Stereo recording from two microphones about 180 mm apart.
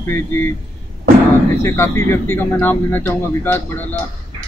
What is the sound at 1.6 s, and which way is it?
Speech, 10° left (ahead or behind).